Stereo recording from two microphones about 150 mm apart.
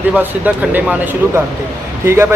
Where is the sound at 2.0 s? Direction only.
15° right (ahead or behind).